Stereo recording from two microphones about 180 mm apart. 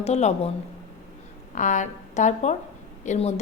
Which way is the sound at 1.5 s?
45° left (ahead or behind).